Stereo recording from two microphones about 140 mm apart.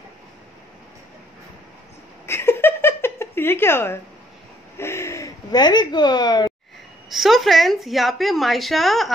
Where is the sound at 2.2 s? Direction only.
15° left (ahead or behind).